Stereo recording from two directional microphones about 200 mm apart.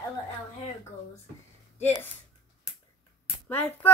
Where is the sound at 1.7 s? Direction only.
10° left (ahead or behind).